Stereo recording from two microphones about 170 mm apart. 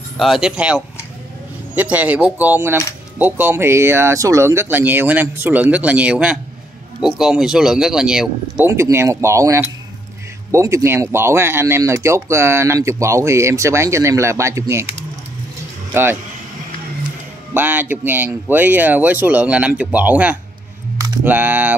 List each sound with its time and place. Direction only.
0.2 s speech: 5° right (ahead or behind)
8.6 s speech: 15° right (ahead or behind)
17.6 s speech: 10° right (ahead or behind)
21.0 s typing: 10° right (ahead or behind)